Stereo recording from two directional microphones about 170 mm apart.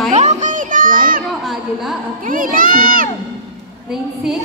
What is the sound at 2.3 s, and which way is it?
Speech, 55° right (ahead or behind).